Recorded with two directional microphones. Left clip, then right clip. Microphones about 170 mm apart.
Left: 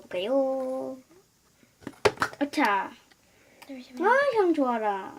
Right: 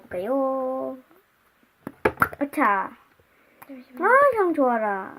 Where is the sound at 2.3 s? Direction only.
35° right (ahead or behind).